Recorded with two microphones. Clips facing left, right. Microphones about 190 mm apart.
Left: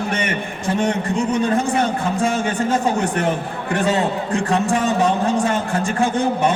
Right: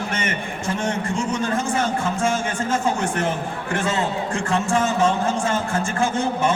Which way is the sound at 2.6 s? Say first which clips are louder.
Left 3 dB; 35° left (ahead or behind).